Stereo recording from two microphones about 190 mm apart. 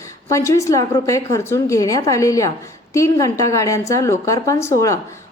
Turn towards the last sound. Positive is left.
turn(degrees=15)  # may be behind; listen again after turning